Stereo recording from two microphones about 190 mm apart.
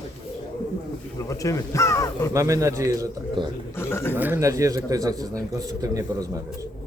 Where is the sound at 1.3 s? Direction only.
15° left (ahead or behind).